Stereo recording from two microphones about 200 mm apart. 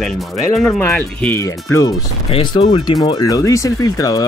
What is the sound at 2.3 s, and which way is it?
Speech, 25° left (ahead or behind).